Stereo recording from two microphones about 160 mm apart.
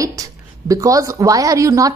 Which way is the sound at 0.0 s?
20° right (ahead or behind).